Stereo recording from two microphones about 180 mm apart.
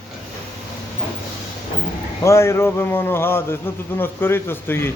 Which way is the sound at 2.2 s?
15° left (ahead or behind).